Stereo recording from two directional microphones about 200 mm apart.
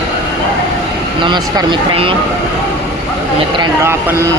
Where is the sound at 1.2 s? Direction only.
20° right (ahead or behind).